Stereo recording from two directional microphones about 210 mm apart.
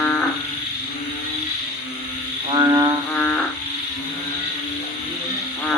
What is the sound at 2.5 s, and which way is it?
Music, 15° right (ahead or behind).